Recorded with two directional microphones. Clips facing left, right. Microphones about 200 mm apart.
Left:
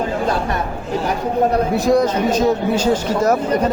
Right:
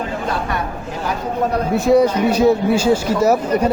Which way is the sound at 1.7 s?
5° right (ahead or behind).